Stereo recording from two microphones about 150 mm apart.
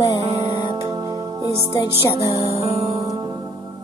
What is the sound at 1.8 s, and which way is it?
Music, 20° left (ahead or behind).